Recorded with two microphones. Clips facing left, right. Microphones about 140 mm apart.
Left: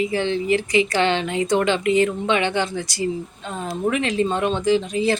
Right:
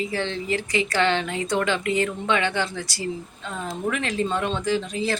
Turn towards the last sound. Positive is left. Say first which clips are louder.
# left 6 dB
turn(degrees=20)  # may be behind; listen again after turning